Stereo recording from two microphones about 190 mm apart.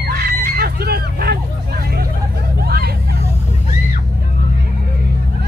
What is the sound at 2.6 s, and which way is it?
Hubbub, 55° right (ahead or behind).